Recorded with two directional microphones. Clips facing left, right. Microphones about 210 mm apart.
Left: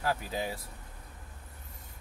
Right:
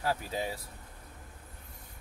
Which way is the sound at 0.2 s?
Centre (ahead or behind).